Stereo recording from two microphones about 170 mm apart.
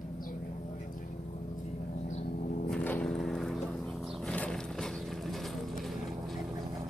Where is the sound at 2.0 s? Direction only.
45° left (ahead or behind).